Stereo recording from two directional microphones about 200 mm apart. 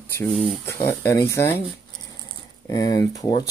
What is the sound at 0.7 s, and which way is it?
Speech, 15° left (ahead or behind).